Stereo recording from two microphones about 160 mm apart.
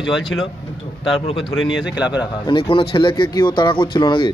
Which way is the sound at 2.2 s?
30° left (ahead or behind).